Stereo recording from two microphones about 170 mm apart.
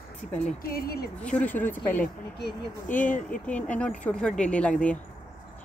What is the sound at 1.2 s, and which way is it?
Speech, 10° left (ahead or behind).